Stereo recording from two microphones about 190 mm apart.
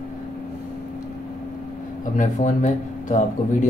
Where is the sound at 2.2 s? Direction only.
40° left (ahead or behind).